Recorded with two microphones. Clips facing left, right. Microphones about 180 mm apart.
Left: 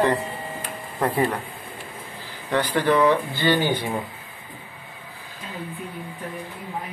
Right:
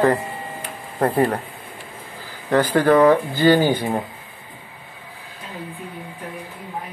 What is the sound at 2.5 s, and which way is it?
Speech, 45° right (ahead or behind).